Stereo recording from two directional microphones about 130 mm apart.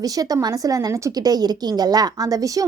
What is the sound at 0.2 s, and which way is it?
Speech, 30° right (ahead or behind).